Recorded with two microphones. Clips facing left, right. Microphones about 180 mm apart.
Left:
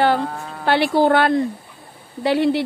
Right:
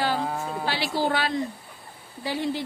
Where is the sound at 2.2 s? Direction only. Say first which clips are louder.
Left 10 dB; 70° left (ahead or behind).